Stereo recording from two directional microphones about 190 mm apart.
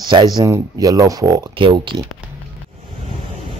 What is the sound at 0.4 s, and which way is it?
Speech, 20° right (ahead or behind).